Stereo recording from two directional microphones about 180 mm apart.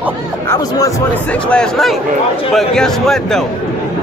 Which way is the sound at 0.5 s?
20° left (ahead or behind).